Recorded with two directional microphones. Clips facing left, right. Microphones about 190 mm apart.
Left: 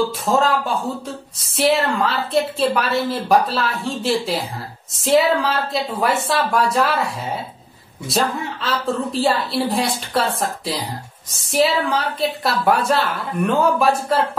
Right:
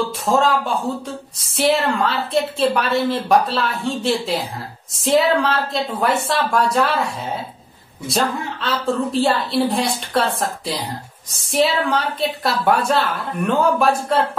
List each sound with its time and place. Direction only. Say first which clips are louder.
0.2 s speech: right 5 dB; centre (ahead or behind)
8.1 s speech: even; centre (ahead or behind)